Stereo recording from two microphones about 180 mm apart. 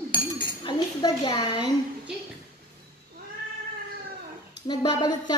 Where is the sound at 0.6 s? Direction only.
25° left (ahead or behind).